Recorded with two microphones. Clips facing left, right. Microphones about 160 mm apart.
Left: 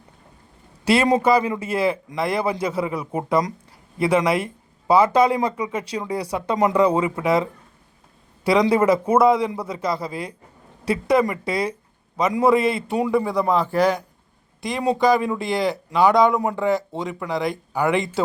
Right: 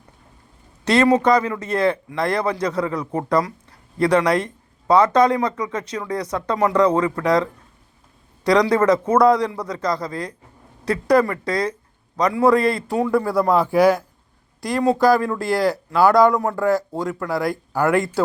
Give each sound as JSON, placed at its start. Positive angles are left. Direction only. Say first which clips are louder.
{"t": 0.9, "sound": "speech", "louder": "right 2 dB", "side_deg": 10}
{"t": 8.7, "sound": "a man's voice", "louder": "right 1 dB", "side_deg": 10}